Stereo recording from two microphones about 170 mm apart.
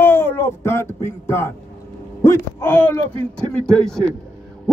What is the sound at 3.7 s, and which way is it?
Speech, 5° left (ahead or behind).